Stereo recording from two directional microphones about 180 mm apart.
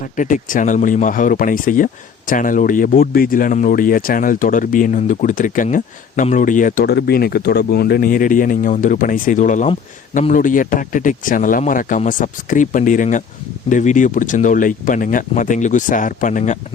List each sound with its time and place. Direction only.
0.0 s speech: 45° left (ahead or behind)
6.8 s speech: 60° left (ahead or behind); by 16.6 s 45° left (ahead or behind)